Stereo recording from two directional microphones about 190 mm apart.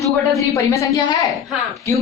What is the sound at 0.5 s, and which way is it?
Speech, 15° left (ahead or behind).